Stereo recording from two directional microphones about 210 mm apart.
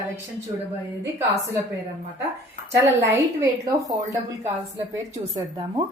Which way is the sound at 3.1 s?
15° right (ahead or behind).